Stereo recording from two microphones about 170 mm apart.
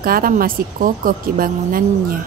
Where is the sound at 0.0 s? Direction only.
60° right (ahead or behind).